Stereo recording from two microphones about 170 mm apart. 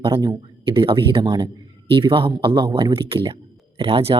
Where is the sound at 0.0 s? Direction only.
25° right (ahead or behind).